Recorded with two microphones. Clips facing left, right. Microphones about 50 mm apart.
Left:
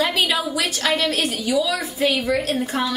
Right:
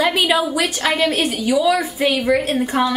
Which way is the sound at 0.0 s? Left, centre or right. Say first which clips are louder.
Right 4 dB; right.